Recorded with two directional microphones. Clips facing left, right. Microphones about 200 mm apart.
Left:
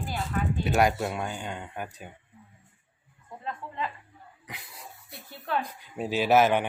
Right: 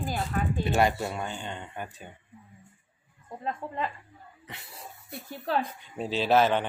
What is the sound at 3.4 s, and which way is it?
Speech, 45° right (ahead or behind).